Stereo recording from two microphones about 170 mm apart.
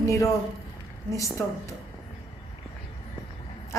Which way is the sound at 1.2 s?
20° left (ahead or behind).